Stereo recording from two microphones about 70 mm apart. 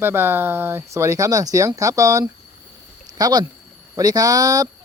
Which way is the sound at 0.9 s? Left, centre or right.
Right.